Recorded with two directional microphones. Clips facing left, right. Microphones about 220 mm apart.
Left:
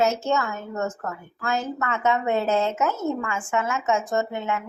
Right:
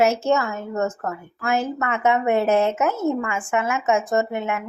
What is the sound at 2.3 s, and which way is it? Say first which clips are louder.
Speech: right 5 dB; 65° right (ahead or behind).